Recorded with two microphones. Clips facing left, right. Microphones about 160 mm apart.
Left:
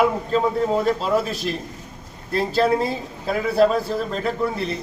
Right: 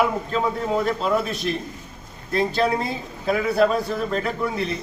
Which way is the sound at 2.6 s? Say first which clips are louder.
Left 3 dB; centre (ahead or behind).